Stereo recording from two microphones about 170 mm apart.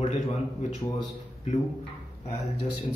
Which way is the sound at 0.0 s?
45° left (ahead or behind).